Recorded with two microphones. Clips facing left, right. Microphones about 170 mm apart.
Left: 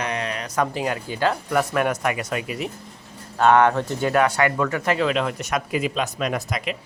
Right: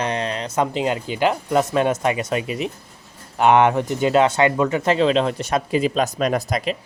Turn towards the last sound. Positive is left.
turn(degrees=-35)  # may be behind; listen again after turning